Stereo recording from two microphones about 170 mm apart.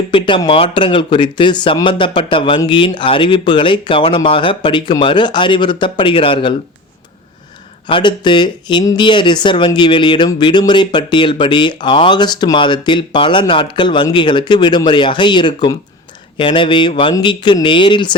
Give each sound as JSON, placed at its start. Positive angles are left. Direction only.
{"t": 0.1, "sound": "speech", "side_deg": 30}
{"t": 7.9, "sound": "speech", "side_deg": 30}